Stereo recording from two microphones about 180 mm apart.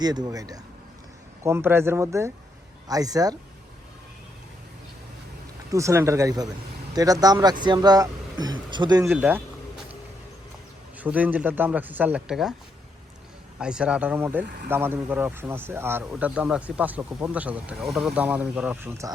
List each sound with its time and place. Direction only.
0.0 s speech: 20° right (ahead or behind)
5.7 s speech: 15° right (ahead or behind)
9.1 s vehicle: 10° right (ahead or behind)
10.9 s speech: 10° right (ahead or behind)
13.6 s speech: 5° right (ahead or behind)
14.4 s speech: 60° right (ahead or behind)
14.7 s speech: 10° right (ahead or behind)